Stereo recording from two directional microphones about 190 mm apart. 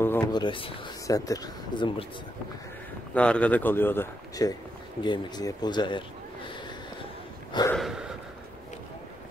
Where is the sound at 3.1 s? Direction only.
5° left (ahead or behind); by 6.0 s 25° left (ahead or behind).